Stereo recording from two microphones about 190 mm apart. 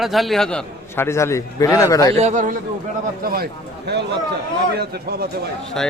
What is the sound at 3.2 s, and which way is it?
Speech, 50° right (ahead or behind).